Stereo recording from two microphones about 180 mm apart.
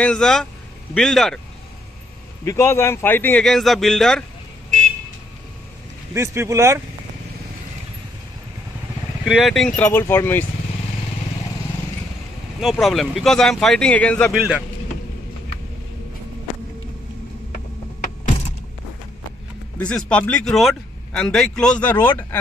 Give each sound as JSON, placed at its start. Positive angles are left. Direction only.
{"t": 0.0, "sound": "speech", "side_deg": 5}
{"t": 2.4, "sound": "a man's voice", "side_deg": 15}
{"t": 6.1, "sound": "speech", "side_deg": -15}
{"t": 9.2, "sound": "a man's voice", "side_deg": 0}
{"t": 12.5, "sound": "speech", "side_deg": 0}
{"t": 19.8, "sound": "speech", "side_deg": 5}